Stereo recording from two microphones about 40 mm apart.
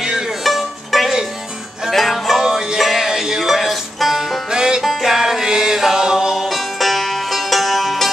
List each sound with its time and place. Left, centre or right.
0.4 s music: centre
1.9 s music: centre
4.5 s music: centre
4.8 s music: centre